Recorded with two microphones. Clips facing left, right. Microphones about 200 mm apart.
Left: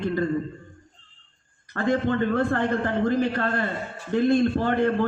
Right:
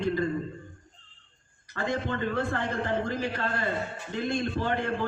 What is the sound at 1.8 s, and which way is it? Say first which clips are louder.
Speech: left 7 dB; 55° left (ahead or behind).